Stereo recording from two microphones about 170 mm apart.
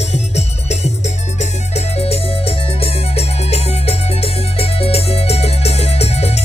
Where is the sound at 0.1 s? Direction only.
40° left (ahead or behind).